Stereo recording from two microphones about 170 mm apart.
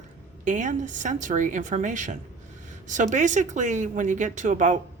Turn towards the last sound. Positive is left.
turn(degrees=-45)  # may be behind; listen again after turning